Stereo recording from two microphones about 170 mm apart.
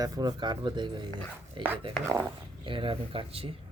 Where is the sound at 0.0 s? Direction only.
25° right (ahead or behind).